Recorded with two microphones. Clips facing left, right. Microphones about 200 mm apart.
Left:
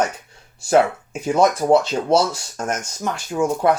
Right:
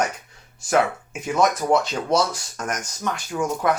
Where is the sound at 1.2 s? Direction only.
30° left (ahead or behind).